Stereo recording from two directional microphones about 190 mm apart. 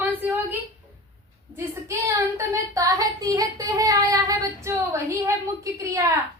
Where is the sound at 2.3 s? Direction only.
15° right (ahead or behind).